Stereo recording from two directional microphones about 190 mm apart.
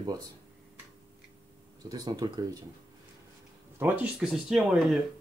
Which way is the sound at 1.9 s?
20° right (ahead or behind).